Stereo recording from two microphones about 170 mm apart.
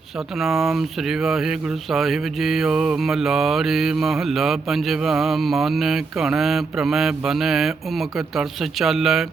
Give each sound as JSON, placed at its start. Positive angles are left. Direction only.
{"t": 0.4, "sound": "speech", "side_deg": 0}